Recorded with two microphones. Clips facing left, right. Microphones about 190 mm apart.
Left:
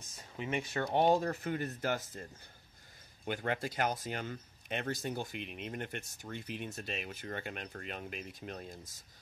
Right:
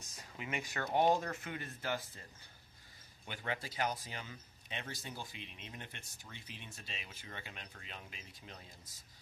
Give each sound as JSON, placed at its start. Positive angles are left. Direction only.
{"t": 0.2, "sound": "speech", "side_deg": 30}
{"t": 0.8, "sound": "speech", "side_deg": 0}
{"t": 1.1, "sound": "speech", "side_deg": 35}
{"t": 3.3, "sound": "speech", "side_deg": 50}